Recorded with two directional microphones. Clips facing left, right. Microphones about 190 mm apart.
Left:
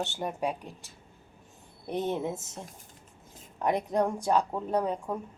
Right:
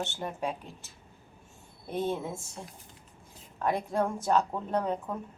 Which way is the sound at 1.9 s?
20° left (ahead or behind).